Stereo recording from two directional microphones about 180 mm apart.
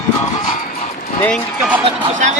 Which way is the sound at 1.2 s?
5° left (ahead or behind).